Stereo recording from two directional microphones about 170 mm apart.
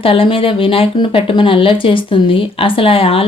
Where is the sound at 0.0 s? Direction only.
35° left (ahead or behind).